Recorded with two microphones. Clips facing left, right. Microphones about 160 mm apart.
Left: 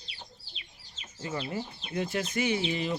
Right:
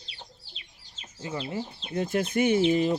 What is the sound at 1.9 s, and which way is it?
Speech, 40° right (ahead or behind).